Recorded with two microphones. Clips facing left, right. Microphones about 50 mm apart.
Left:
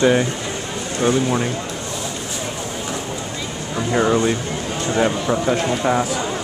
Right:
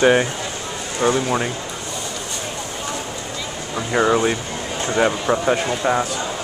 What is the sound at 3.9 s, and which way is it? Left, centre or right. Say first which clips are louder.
A man's voice: even; centre.